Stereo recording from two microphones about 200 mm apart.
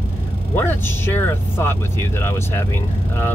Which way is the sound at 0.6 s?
10° left (ahead or behind).